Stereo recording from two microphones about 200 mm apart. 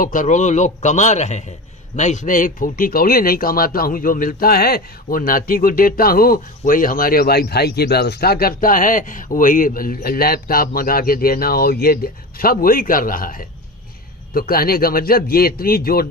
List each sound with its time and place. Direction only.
0.0 s a man's voice: 40° left (ahead or behind)